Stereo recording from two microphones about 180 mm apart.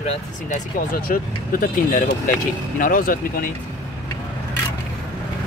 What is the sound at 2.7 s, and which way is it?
Speech, 50° left (ahead or behind).